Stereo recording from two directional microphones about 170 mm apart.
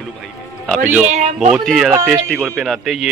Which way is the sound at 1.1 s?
40° right (ahead or behind).